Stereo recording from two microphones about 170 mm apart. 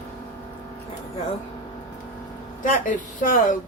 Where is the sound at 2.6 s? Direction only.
50° left (ahead or behind).